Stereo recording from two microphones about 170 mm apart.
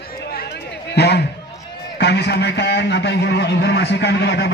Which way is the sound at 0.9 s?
75° left (ahead or behind).